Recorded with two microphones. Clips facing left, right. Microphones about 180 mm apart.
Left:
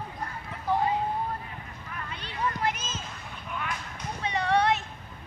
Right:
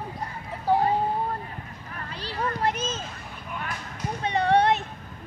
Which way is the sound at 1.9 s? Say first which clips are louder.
Right 4 dB; 35° right (ahead or behind).